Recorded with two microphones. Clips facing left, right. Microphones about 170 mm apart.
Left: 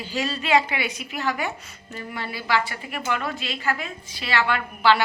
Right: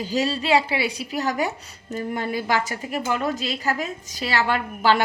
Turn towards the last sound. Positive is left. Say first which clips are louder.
# even
turn(degrees=-40)  # may be behind; listen again after turning